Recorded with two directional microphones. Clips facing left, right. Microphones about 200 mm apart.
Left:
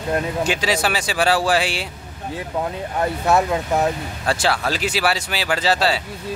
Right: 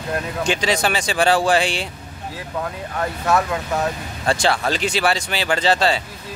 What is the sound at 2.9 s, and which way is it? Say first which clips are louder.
Speech: left 2 dB; 25° left (ahead or behind).